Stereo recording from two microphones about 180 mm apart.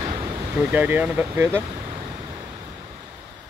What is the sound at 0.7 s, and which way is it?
Speech, 10° right (ahead or behind).